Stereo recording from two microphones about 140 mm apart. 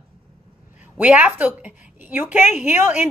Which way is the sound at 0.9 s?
10° right (ahead or behind).